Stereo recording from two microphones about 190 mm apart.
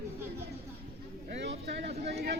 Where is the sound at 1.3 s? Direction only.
65° right (ahead or behind).